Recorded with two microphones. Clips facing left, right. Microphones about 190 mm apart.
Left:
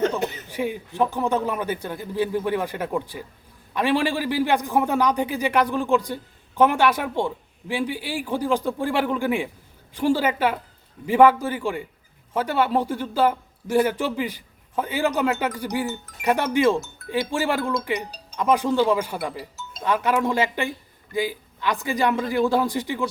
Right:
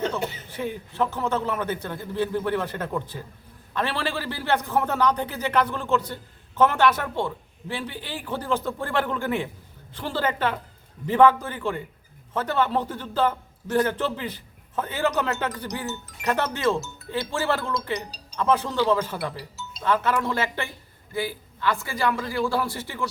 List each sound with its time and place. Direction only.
0.1 s a man's voice: 10° left (ahead or behind)
19.4 s music: 50° left (ahead or behind)
19.8 s a man's voice: 15° left (ahead or behind)